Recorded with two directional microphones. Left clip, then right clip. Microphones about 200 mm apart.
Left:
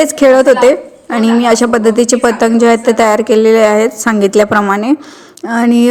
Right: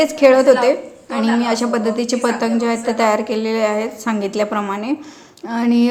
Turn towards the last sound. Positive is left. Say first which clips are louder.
# left 7 dB
turn(degrees=35)  # may be behind; listen again after turning